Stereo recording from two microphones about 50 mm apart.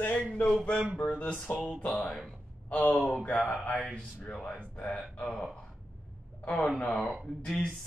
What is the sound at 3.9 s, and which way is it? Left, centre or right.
Speech, left.